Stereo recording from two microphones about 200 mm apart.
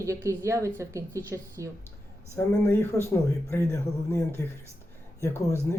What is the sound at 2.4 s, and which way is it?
Speech, 10° left (ahead or behind).